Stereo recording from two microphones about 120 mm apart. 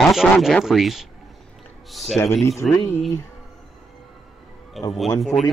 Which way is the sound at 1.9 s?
Centre (ahead or behind).